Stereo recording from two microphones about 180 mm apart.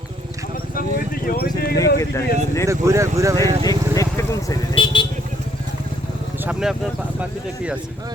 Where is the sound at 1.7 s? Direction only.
15° left (ahead or behind).